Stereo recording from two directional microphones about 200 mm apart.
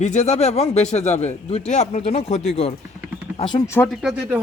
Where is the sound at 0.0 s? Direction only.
35° left (ahead or behind).